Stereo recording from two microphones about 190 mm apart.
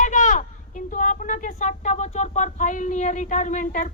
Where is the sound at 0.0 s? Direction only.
40° left (ahead or behind).